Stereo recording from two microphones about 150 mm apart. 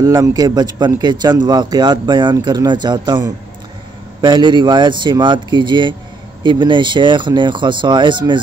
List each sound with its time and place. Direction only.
0.0 s speech: 25° right (ahead or behind)